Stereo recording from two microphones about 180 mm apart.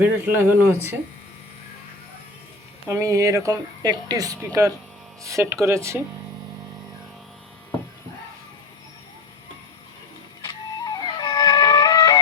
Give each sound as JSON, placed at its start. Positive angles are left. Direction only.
{"t": 0.0, "sound": "speech", "side_deg": -10}
{"t": 2.9, "sound": "speech", "side_deg": -15}
{"t": 10.4, "sound": "music", "side_deg": 20}